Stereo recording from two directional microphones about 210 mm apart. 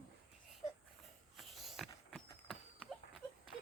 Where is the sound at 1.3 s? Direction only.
Centre (ahead or behind).